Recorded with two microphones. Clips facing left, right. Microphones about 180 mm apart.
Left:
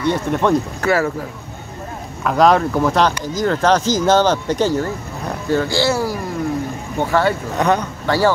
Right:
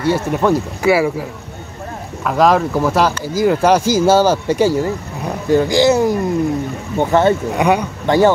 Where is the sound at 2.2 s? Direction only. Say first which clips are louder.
Even; centre (ahead or behind).